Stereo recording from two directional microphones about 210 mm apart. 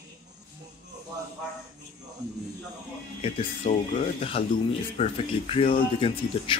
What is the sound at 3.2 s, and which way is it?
Speech, 30° left (ahead or behind).